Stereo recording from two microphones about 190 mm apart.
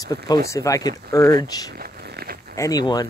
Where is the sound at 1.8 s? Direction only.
50° right (ahead or behind).